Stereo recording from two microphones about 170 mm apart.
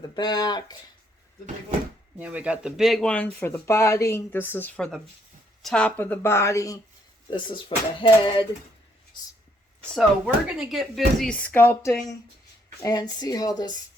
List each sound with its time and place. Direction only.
0.0 s speech: 25° left (ahead or behind)
2.1 s a woman's voice: 10° right (ahead or behind); by 8.4 s 30° left (ahead or behind)
9.9 s speech: centre (ahead or behind); by 11.9 s 15° left (ahead or behind)
12.8 s speech: 25° left (ahead or behind)